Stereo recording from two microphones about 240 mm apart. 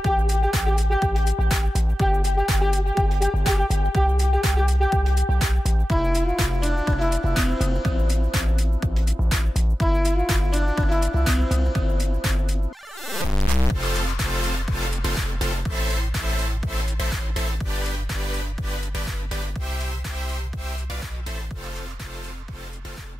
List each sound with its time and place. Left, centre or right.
0.0 s music: centre